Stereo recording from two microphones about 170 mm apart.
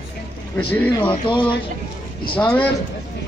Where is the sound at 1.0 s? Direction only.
30° left (ahead or behind).